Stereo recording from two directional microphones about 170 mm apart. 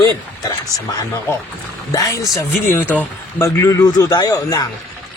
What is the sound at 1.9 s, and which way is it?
Speech, 20° left (ahead or behind).